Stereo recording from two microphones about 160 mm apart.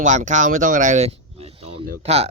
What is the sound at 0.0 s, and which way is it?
Speech, 50° right (ahead or behind).